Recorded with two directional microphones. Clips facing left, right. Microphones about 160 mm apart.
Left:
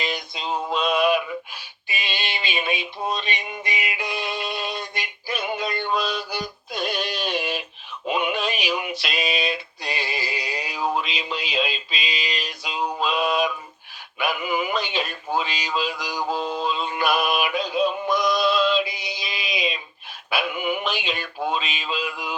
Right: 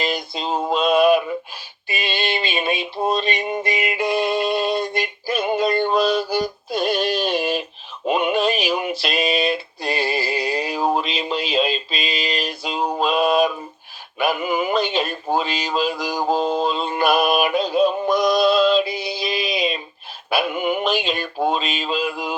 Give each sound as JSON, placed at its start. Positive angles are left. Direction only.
{"t": 0.0, "sound": "mantra", "side_deg": -45}
{"t": 1.9, "sound": "synthetic singing", "side_deg": -50}
{"t": 8.0, "sound": "a sound", "side_deg": -45}
{"t": 9.0, "sound": "synthetic singing", "side_deg": -50}
{"t": 10.6, "sound": "a sound", "side_deg": -45}
{"t": 14.2, "sound": "male singing", "side_deg": -45}
{"t": 18.9, "sound": "mantra", "side_deg": 15}
{"t": 19.2, "sound": "a sound", "side_deg": -45}
{"t": 20.3, "sound": "synthetic singing", "side_deg": -45}